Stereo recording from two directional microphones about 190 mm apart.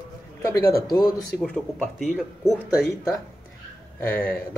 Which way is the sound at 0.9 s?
20° left (ahead or behind).